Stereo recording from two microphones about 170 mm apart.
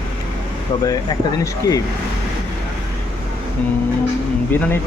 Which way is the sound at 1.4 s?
20° left (ahead or behind).